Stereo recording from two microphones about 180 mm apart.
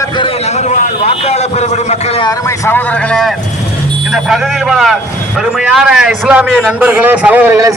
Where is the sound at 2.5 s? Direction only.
10° left (ahead or behind).